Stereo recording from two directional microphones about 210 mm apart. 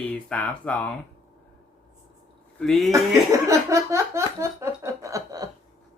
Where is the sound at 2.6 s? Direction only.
Centre (ahead or behind).